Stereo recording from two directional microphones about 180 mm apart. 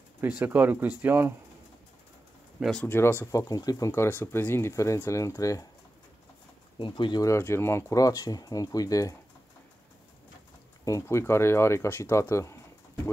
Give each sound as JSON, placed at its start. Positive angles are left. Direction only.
{"t": 0.4, "sound": "speech", "side_deg": -10}
{"t": 2.6, "sound": "speech", "side_deg": 5}
{"t": 6.8, "sound": "speech", "side_deg": 25}
{"t": 10.9, "sound": "speech", "side_deg": 15}